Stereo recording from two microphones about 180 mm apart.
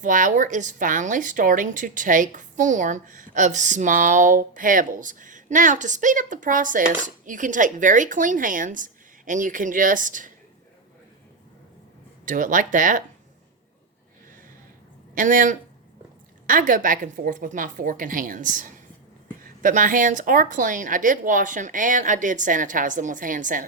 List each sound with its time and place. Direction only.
0.0 s a woman's voice: 45° right (ahead or behind)
12.2 s a woman's voice: 45° right (ahead or behind)
15.1 s a woman's voice: 50° right (ahead or behind)